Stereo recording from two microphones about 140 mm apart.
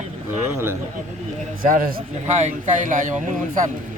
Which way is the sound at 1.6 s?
80° right.